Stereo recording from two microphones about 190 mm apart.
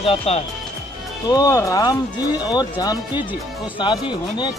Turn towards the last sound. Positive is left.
turn(degrees=25)  # may be behind; listen again after turning